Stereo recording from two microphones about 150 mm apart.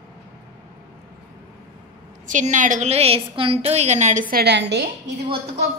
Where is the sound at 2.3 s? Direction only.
55° right (ahead or behind).